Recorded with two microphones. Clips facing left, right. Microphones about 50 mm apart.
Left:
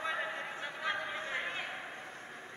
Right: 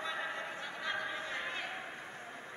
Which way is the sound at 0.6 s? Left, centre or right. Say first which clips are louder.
Left 3 dB; centre.